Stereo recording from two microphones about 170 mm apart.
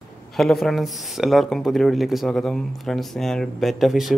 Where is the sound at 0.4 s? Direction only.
Centre (ahead or behind).